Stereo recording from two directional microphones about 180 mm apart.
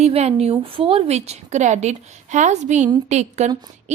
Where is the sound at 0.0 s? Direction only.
35° right (ahead or behind).